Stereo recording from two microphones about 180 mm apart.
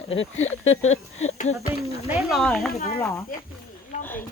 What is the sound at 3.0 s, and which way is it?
Speech, 15° left (ahead or behind).